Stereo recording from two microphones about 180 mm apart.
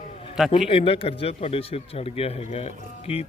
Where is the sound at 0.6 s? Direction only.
30° left (ahead or behind).